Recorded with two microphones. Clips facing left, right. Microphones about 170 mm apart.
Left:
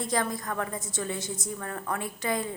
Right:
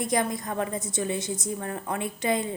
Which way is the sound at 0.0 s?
20° right (ahead or behind).